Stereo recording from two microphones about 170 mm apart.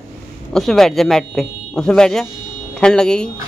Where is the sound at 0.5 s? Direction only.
Centre (ahead or behind).